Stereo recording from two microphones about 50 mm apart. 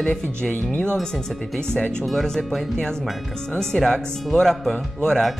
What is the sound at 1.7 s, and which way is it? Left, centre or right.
Speech, centre.